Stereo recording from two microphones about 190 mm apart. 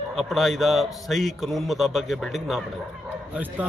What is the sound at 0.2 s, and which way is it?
A man's voice, centre (ahead or behind).